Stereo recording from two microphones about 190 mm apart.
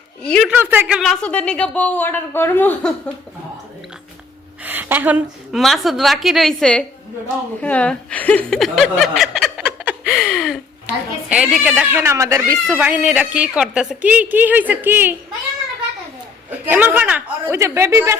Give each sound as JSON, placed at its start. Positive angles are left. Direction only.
{"t": 0.2, "sound": "speech", "side_deg": 5}
{"t": 0.5, "sound": "speech", "side_deg": -10}
{"t": 4.6, "sound": "speech", "side_deg": -10}
{"t": 16.6, "sound": "speech", "side_deg": -10}